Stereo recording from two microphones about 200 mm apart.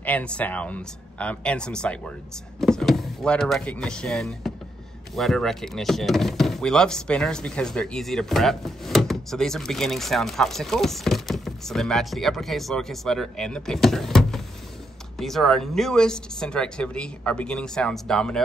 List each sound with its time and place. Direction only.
0.0 s speech: 5° left (ahead or behind)